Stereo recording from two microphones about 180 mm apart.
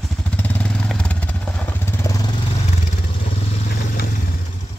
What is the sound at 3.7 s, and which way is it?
Vehicle, 55° left (ahead or behind).